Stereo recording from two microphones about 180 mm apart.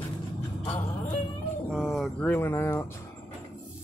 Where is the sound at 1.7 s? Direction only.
Centre (ahead or behind).